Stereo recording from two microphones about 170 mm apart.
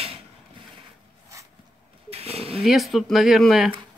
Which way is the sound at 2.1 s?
35° right (ahead or behind).